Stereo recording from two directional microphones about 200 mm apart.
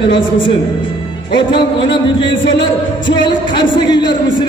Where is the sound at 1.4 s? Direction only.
25° left (ahead or behind).